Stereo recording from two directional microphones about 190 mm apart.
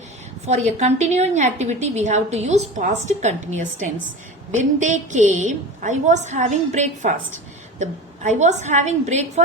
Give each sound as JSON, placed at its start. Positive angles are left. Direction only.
{"t": 0.4, "sound": "a woman's voice", "side_deg": -35}